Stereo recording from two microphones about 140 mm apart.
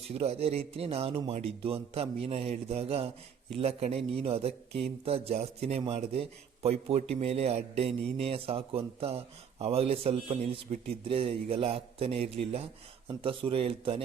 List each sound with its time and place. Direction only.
0.1 s speech: 45° right (ahead or behind)